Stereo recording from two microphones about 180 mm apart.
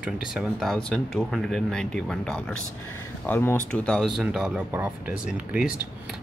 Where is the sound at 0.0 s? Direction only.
5° right (ahead or behind).